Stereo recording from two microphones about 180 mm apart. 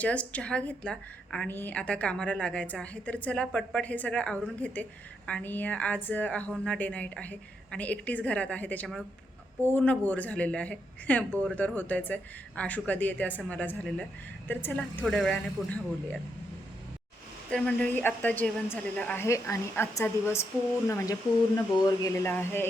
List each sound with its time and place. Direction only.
0.0 s a woman's voice: 5° left (ahead or behind)
17.5 s a woman's voice: 5° left (ahead or behind)